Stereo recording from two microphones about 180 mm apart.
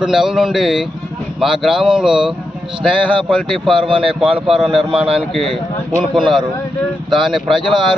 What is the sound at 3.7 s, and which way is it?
Speech, 30° right (ahead or behind).